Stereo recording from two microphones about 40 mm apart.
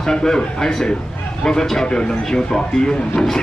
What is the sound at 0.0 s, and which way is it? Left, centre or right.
A man's voice, centre.